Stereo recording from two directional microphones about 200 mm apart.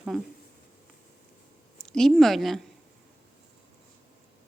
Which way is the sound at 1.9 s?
Centre (ahead or behind).